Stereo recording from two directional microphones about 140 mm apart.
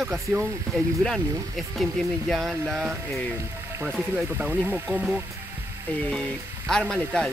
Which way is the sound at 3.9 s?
5° right (ahead or behind).